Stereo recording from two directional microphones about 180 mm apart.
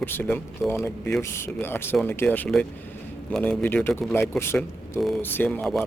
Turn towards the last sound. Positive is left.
turn(degrees=0)  # may be behind; listen again after turning